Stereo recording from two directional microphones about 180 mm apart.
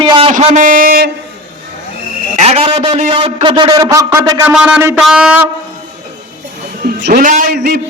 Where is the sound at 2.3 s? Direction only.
35° right (ahead or behind); by 4.4 s 20° right (ahead or behind).